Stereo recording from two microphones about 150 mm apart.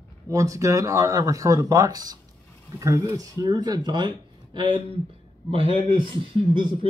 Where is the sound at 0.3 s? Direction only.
20° right (ahead or behind).